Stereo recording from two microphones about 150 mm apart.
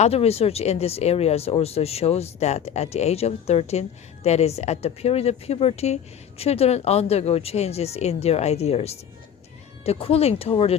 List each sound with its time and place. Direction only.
0.0 s speech: 45° left (ahead or behind)